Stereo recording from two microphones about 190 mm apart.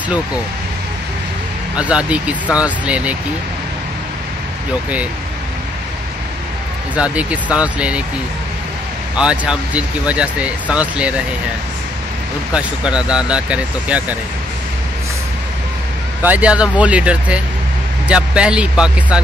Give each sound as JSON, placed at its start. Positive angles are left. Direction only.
{"t": 1.8, "sound": "speech", "side_deg": -5}
{"t": 7.0, "sound": "speech", "side_deg": -5}
{"t": 9.1, "sound": "speech", "side_deg": -5}
{"t": 12.5, "sound": "speech", "side_deg": -5}
{"t": 16.2, "sound": "speech", "side_deg": -10}